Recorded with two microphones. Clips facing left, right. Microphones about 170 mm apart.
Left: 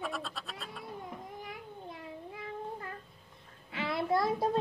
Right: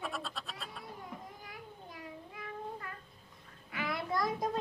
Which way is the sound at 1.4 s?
25° left (ahead or behind).